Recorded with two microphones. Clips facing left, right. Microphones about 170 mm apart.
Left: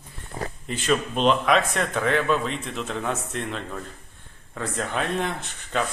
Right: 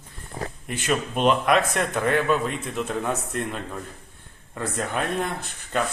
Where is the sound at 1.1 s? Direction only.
5° right (ahead or behind).